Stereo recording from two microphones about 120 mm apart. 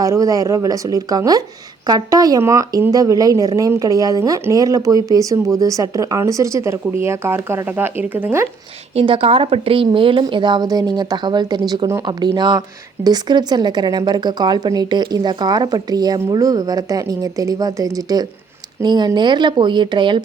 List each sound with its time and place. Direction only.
0.0 s speech: 30° right (ahead or behind)
9.0 s a woman's voice: 50° right (ahead or behind)